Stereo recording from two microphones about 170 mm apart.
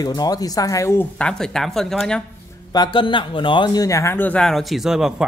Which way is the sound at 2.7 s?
25° left (ahead or behind).